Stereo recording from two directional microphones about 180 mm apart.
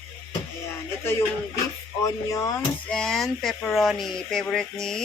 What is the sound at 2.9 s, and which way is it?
Speech, 5° left (ahead or behind).